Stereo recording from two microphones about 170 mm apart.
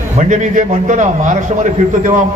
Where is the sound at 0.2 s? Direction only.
45° right (ahead or behind).